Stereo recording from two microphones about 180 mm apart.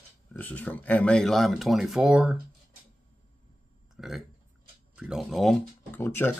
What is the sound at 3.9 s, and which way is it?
Speech, centre (ahead or behind).